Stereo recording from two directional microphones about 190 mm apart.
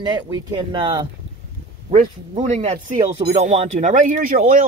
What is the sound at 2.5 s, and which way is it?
Speech, 30° right (ahead or behind).